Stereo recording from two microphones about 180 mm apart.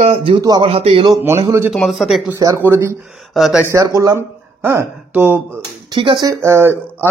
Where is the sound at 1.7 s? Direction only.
Centre (ahead or behind).